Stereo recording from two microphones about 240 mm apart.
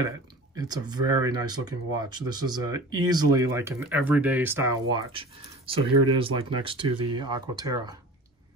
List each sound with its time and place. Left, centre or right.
0.6 s speech: centre